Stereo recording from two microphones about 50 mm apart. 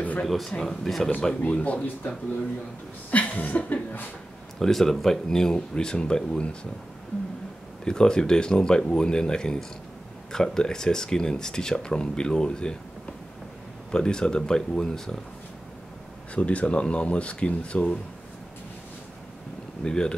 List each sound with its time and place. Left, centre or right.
0.5 s speech: centre
1.4 s speech: left
3.1 s chuckle: left
4.6 s speech: centre
7.8 s speech: centre
13.9 s speech: centre
16.3 s speech: left
19.8 s speech: centre